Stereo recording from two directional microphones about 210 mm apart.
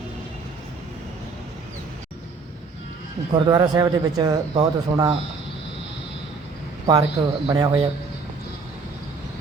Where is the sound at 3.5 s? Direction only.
20° right (ahead or behind).